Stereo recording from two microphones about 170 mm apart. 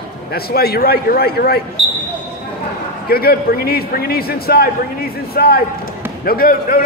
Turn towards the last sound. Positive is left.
turn(degrees=60)  # may be behind; listen again after turning